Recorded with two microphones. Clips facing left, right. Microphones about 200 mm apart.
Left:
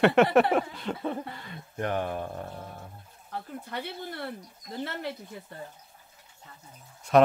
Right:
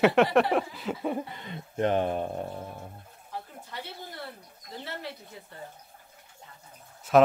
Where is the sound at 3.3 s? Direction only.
60° left (ahead or behind).